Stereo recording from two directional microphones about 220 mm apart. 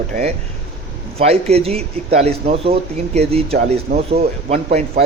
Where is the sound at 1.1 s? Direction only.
30° right (ahead or behind).